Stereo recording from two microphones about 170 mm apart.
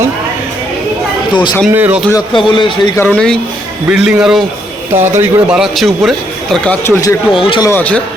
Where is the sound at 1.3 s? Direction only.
25° left (ahead or behind).